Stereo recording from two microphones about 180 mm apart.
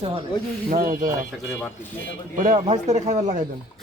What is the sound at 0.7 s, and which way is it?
Speech, 50° right (ahead or behind).